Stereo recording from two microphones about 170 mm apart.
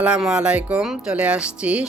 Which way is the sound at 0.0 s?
5° right (ahead or behind).